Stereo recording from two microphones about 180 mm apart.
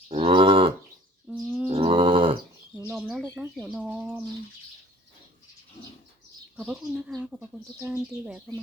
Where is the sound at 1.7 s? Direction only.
30° right (ahead or behind).